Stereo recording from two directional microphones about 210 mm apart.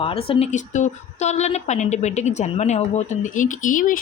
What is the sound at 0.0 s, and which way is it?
A woman's voice, 25° left (ahead or behind).